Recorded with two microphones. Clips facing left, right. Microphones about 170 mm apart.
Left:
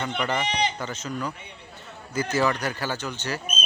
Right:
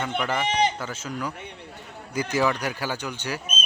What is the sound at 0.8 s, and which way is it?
Speech, 5° right (ahead or behind).